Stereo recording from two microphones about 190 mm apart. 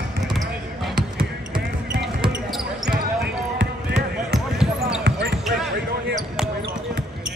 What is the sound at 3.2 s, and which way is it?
Basketball bounce, 60° right (ahead or behind).